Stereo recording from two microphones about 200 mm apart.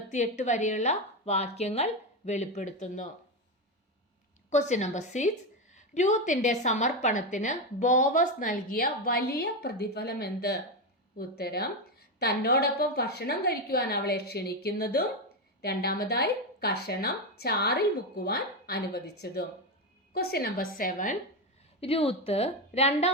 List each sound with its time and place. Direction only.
0.1 s a woman's voice: 35° left (ahead or behind)
4.4 s a woman's voice: 35° left (ahead or behind)
21.8 s a woman's voice: 30° left (ahead or behind)